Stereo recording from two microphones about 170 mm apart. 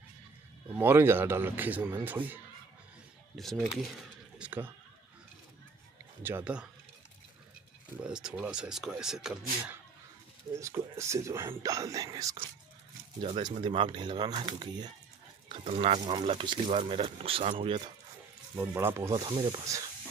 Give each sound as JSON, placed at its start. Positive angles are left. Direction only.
{"t": 0.7, "sound": "speech", "side_deg": -10}
{"t": 3.3, "sound": "speech", "side_deg": 0}
{"t": 4.4, "sound": "a sound", "side_deg": -10}
{"t": 6.2, "sound": "speech", "side_deg": -10}
{"t": 8.0, "sound": "speech", "side_deg": -5}
{"t": 10.5, "sound": "speech", "side_deg": -15}
{"t": 13.2, "sound": "speech", "side_deg": -30}
{"t": 18.6, "sound": "speech", "side_deg": -10}